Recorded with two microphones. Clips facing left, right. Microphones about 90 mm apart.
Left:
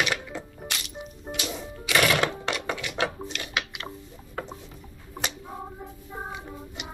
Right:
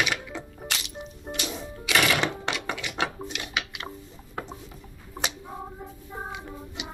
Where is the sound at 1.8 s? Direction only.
20° right (ahead or behind).